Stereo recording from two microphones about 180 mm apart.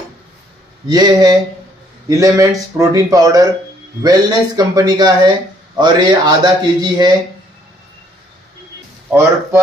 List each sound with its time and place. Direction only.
0.8 s speech: 20° right (ahead or behind)